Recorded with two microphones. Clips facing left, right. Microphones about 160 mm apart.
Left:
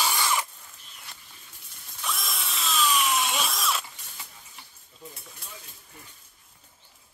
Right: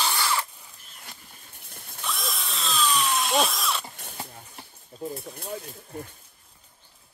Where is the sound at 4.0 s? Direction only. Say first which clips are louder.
Right 8 dB; 60° right (ahead or behind).